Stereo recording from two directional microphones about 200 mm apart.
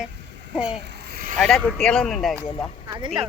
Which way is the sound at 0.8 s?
55° right (ahead or behind).